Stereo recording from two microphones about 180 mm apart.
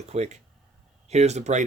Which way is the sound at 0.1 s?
35° right (ahead or behind).